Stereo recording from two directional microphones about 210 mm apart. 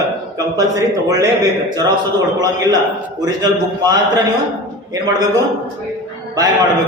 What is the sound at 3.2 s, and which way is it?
A man's voice, 20° right (ahead or behind).